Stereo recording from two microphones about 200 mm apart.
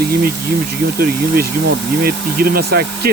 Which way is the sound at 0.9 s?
50° right (ahead or behind).